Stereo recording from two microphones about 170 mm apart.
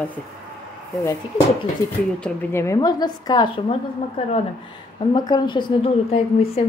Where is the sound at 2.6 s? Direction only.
20° left (ahead or behind); by 4.3 s 35° left (ahead or behind).